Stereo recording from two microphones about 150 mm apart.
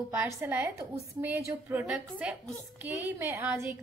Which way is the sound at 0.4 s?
15° right (ahead or behind).